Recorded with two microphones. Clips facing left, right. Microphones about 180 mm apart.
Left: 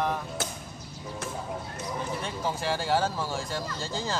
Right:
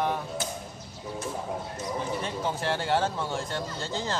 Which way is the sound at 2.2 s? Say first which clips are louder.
Right 1 dB; centre (ahead or behind).